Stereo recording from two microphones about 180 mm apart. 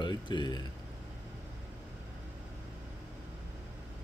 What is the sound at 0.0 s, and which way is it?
Speech, 25° left (ahead or behind).